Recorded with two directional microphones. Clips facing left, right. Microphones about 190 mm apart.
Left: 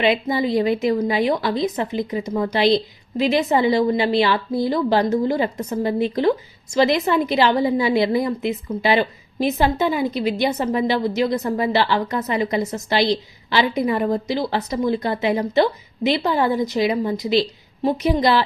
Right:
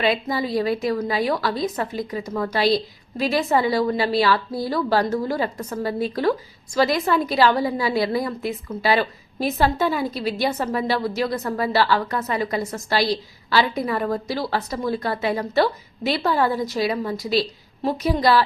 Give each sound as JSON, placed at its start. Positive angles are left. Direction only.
{"t": 0.0, "sound": "a woman's voice", "side_deg": 20}